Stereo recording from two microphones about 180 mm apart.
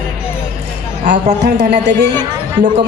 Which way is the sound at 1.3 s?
70° right (ahead or behind).